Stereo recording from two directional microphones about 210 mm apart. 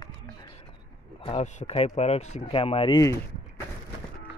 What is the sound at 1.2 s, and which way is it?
Speech, 30° left (ahead or behind).